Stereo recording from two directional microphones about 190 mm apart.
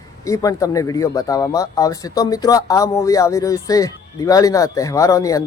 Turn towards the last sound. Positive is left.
turn(degrees=15)  # may be behind; listen again after turning